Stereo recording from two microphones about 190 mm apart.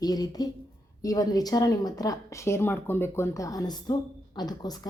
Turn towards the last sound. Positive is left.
turn(degrees=20)  # may be behind; listen again after turning